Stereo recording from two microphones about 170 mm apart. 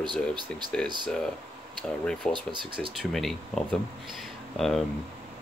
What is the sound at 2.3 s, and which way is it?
Speech, 30° right (ahead or behind).